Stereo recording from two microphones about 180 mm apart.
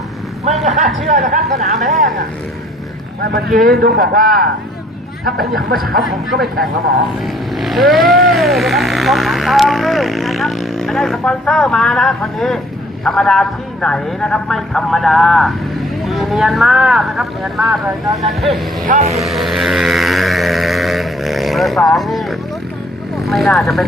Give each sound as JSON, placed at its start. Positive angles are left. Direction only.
{"t": 0.5, "sound": "a sound", "side_deg": -35}
{"t": 1.0, "sound": "speech", "side_deg": -40}
{"t": 3.3, "sound": "speech", "side_deg": -55}
{"t": 7.5, "sound": "speech", "side_deg": 0}
{"t": 18.9, "sound": "speech", "side_deg": -40}
{"t": 19.1, "sound": "music", "side_deg": 0}
{"t": 23.1, "sound": "speech", "side_deg": 0}